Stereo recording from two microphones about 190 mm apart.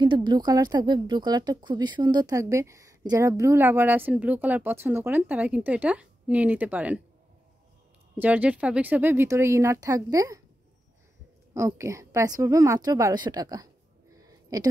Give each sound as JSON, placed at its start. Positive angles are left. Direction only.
{"t": 0.0, "sound": "speech", "side_deg": -25}
{"t": 8.2, "sound": "speech", "side_deg": -10}
{"t": 11.5, "sound": "a woman's voice", "side_deg": -15}
{"t": 14.2, "sound": "a sound", "side_deg": -20}